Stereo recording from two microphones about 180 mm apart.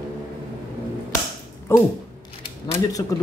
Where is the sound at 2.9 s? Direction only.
20° left (ahead or behind).